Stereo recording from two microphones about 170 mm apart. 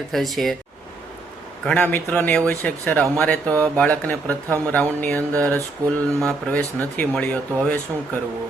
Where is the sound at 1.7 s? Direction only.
10° left (ahead or behind).